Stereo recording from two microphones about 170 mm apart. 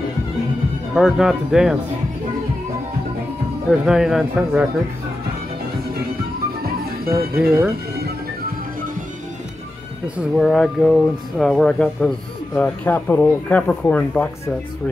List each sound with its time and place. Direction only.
0.9 s speech: centre (ahead or behind)
3.8 s speech: 5° right (ahead or behind)
6.6 s music: 65° right (ahead or behind)
10.1 s speech: centre (ahead or behind)